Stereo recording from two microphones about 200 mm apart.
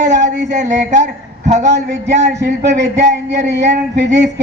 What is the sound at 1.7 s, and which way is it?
A woman's voice, 60° right (ahead or behind).